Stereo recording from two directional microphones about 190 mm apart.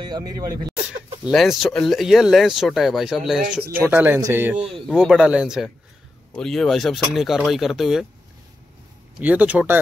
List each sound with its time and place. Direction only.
0.0 s speech: 20° right (ahead or behind)
0.8 s speech: 5° right (ahead or behind)
9.2 s speech: 10° right (ahead or behind)